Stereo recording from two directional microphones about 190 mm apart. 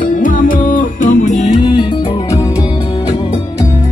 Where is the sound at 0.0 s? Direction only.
45° left (ahead or behind).